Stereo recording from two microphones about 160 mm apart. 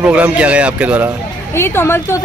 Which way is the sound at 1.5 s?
15° left (ahead or behind).